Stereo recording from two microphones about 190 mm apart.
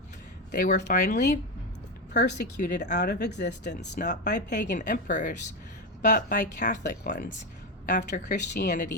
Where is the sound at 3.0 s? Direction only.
60° left (ahead or behind).